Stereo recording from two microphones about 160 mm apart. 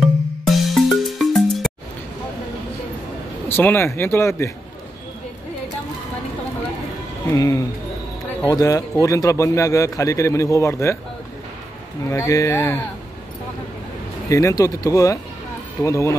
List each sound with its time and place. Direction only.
0.0 s music: centre (ahead or behind)
3.4 s speech: 15° left (ahead or behind)
7.3 s a man's voice: 20° left (ahead or behind)
12.1 s speech: 20° left (ahead or behind)
14.3 s a man's voice: 20° left (ahead or behind)